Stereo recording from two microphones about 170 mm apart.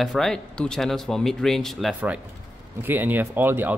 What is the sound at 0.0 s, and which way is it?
Speech, centre (ahead or behind).